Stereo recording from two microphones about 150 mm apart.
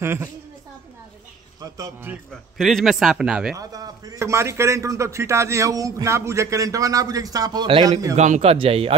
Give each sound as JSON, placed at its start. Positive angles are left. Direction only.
{"t": 0.0, "sound": "a woman's voice", "side_deg": -15}
{"t": 2.1, "sound": "a woman's voice", "side_deg": -10}
{"t": 2.5, "sound": "a man's voice", "side_deg": 0}
{"t": 3.5, "sound": "a man's voice", "side_deg": -25}
{"t": 8.2, "sound": "a man's voice", "side_deg": -45}